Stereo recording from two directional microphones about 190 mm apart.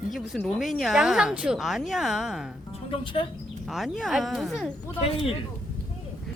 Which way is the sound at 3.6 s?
Centre (ahead or behind).